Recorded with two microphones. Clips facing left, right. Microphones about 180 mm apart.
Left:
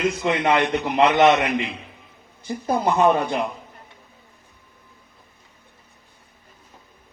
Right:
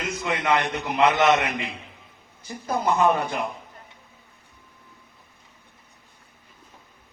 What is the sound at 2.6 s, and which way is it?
Speech, 20° left (ahead or behind).